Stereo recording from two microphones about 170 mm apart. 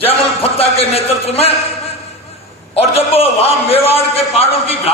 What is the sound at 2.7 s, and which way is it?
A man's voice, 35° left (ahead or behind).